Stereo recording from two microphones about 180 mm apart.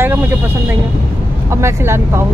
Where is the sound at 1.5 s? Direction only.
15° right (ahead or behind).